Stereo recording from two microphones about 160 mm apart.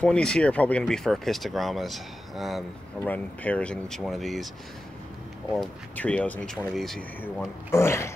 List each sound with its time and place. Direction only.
0.0 s speech: 5° left (ahead or behind)
3.0 s speech: 10° left (ahead or behind)
5.5 s speech: 5° left (ahead or behind)
7.2 s speech: 15° left (ahead or behind)